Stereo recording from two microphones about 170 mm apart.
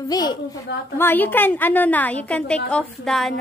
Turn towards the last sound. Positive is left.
turn(degrees=0)  # may be behind; listen again after turning